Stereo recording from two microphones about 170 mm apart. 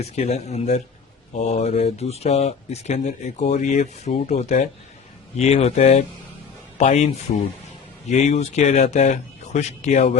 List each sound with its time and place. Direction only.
0.0 s speech: 40° left (ahead or behind)